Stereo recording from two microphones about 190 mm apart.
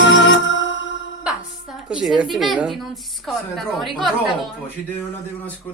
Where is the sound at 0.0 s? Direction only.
80° left.